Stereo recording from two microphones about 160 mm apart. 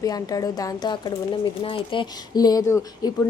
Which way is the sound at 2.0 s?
25° left (ahead or behind).